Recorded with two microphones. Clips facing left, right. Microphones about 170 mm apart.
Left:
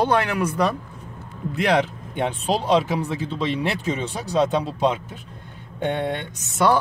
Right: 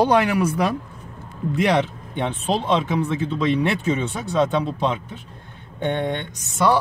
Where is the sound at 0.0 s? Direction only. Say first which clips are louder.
Right 3 dB; 15° right (ahead or behind).